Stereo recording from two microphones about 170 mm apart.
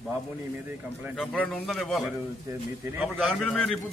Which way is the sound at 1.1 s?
5° left (ahead or behind).